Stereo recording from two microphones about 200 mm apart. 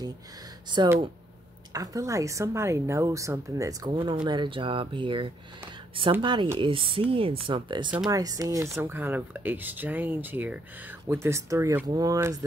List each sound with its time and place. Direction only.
0.7 s a woman's voice: 20° right (ahead or behind)